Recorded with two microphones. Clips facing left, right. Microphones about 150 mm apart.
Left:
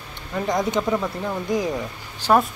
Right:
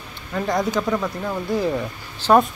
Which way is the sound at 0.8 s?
10° left (ahead or behind).